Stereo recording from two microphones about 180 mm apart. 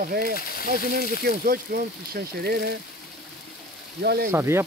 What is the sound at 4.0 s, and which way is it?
Speech, 60° right (ahead or behind).